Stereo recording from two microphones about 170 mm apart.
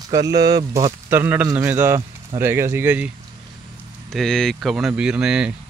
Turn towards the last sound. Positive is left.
turn(degrees=-5)  # may be behind; listen again after turning